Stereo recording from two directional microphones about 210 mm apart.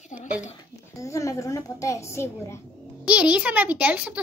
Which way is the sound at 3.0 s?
5° right (ahead or behind).